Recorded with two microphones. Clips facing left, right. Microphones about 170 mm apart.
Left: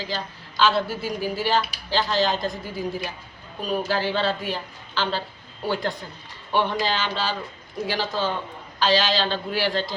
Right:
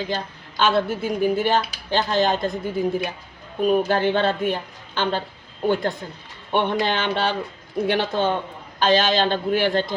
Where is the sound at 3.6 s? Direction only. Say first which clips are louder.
Right 6 dB; 55° right (ahead or behind).